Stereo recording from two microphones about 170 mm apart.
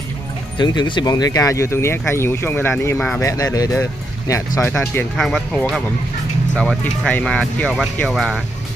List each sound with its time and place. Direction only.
0.6 s speech: 25° left (ahead or behind)
5.1 s speech: centre (ahead or behind)
7.0 s speech: 5° left (ahead or behind)